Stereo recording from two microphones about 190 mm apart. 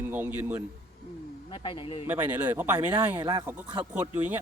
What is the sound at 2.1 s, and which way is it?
Speech, 10° right (ahead or behind).